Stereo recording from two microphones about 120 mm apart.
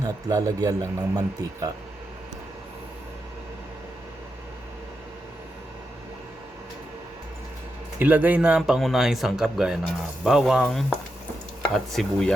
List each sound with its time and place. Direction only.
0.0 s speech: 30° right (ahead or behind)
7.9 s speech: 15° right (ahead or behind)